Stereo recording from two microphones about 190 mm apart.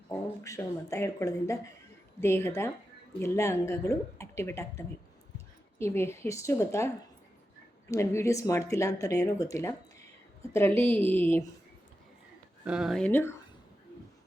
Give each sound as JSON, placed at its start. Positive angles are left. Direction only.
{"t": 0.1, "sound": "speech", "side_deg": 15}
{"t": 5.8, "sound": "speech", "side_deg": 15}
{"t": 12.6, "sound": "speech", "side_deg": -5}